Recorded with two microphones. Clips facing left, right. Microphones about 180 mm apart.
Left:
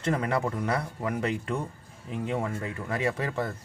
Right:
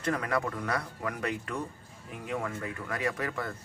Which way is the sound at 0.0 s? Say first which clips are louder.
Left 3 dB; 25° left (ahead or behind).